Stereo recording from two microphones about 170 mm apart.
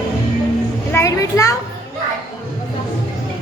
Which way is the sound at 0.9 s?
15° left (ahead or behind).